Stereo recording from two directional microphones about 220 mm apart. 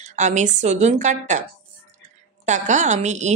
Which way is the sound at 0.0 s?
35° right (ahead or behind).